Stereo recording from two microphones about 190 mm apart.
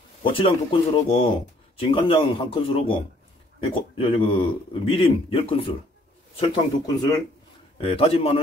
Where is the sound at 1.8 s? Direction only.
30° left (ahead or behind).